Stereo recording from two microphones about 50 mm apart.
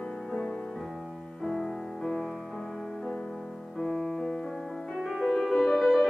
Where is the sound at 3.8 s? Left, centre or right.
Centre.